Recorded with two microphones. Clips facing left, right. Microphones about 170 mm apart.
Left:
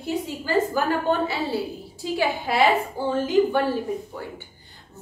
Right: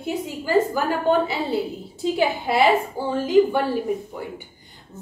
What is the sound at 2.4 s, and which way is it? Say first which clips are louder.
Speech: right 1 dB; centre (ahead or behind).